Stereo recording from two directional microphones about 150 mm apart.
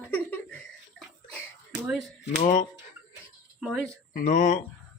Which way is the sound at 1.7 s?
10° right (ahead or behind).